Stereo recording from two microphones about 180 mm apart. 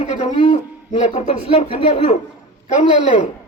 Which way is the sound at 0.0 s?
40° left (ahead or behind).